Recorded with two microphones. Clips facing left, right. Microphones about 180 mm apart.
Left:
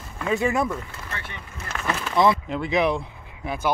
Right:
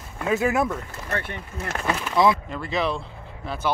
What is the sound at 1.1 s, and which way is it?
Speech, 55° right (ahead or behind).